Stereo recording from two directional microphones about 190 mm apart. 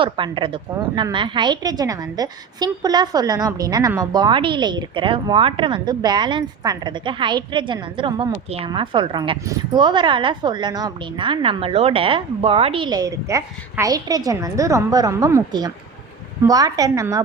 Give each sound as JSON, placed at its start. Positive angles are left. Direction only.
{"t": 0.0, "sound": "a woman's voice", "side_deg": -25}